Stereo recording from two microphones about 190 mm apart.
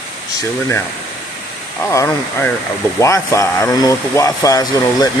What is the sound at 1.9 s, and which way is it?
Speech, 15° left (ahead or behind).